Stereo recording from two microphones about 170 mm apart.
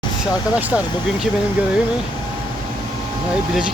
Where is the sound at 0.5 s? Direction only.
5° right (ahead or behind).